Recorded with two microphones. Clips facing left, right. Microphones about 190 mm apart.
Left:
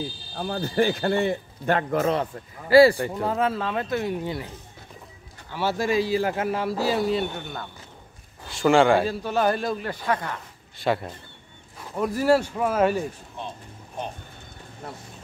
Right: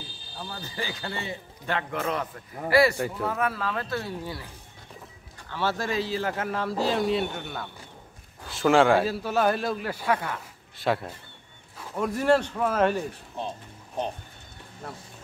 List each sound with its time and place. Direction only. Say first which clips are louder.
0.4 s a man's voice: left 12 dB; 55° left (ahead or behind); by 4.5 s 20° left (ahead or behind)
5.5 s a man's voice: left 4 dB; 10° left (ahead or behind)